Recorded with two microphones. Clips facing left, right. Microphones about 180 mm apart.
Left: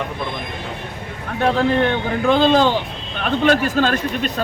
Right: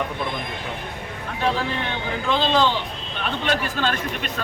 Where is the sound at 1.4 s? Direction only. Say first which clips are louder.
Left 8 dB; 50° left (ahead or behind).